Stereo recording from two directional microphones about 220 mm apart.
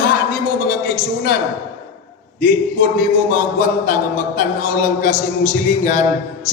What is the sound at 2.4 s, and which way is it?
A man's voice, 40° left (ahead or behind).